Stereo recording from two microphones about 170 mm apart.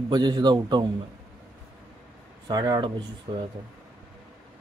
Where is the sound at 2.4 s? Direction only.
25° right (ahead or behind).